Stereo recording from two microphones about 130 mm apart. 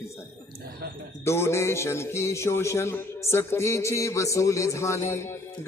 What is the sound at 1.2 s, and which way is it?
A man's voice, 20° left (ahead or behind).